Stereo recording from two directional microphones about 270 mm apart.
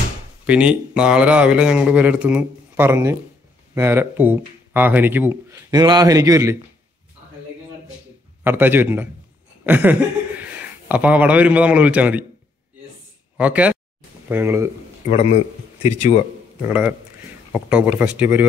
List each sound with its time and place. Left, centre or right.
0.5 s speech: centre
8.5 s speech: centre
13.4 s speech: centre
15.0 s a man's voice: left
16.6 s speech: centre